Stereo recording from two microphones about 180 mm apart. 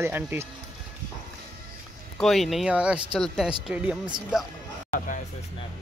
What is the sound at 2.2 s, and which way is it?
Speech, centre (ahead or behind).